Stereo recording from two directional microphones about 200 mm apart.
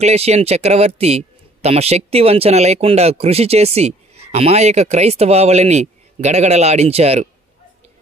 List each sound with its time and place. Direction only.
0.0 s speech: 30° right (ahead or behind)